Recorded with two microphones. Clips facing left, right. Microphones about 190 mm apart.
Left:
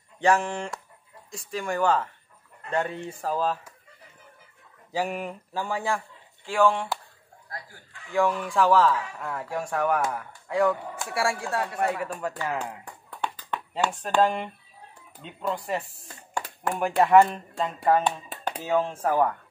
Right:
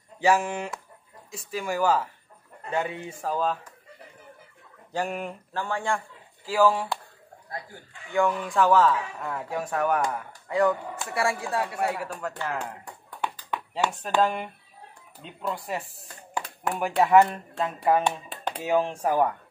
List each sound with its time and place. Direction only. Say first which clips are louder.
0.2 s a man's voice: even; 5° right (ahead or behind)
4.9 s a man's voice: left 1 dB; centre (ahead or behind)
8.1 s a man's voice: even; centre (ahead or behind)
12.1 s a man's voice: left 2 dB; 5° left (ahead or behind)
13.2 s a sound: even; 15° right (ahead or behind)
14.2 s a man's voice: left 2 dB; centre (ahead or behind)